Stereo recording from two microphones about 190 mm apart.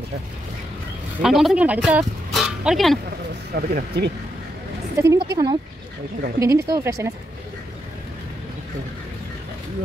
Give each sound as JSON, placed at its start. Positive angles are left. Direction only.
{"t": 1.2, "sound": "speech", "side_deg": 0}
{"t": 3.5, "sound": "speech", "side_deg": -55}
{"t": 4.9, "sound": "a woman's voice", "side_deg": -15}